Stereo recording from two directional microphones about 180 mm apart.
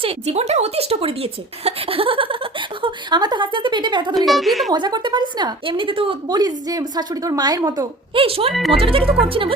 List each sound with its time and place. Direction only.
0.0 s speech: 35° right (ahead or behind)
4.3 s a woman's voice: centre (ahead or behind)
4.7 s speech: 25° right (ahead or behind)
8.2 s speech: 30° right (ahead or behind)